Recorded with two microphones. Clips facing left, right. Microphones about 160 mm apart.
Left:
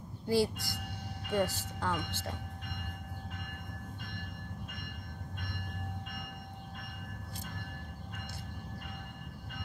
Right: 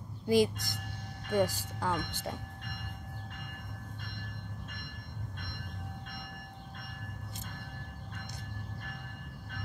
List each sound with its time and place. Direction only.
0.3 s speech: 15° right (ahead or behind)